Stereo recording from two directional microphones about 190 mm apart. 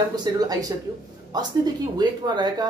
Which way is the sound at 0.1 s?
20° right (ahead or behind).